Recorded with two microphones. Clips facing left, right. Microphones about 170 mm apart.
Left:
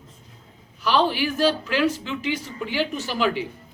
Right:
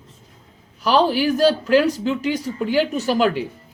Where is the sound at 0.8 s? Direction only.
40° right (ahead or behind).